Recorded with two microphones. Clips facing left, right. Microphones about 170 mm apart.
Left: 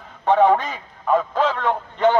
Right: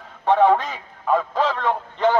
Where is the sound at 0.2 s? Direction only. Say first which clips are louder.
Left 1 dB; 5° left (ahead or behind).